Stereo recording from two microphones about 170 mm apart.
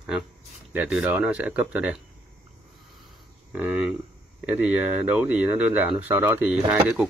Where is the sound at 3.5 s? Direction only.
10° right (ahead or behind).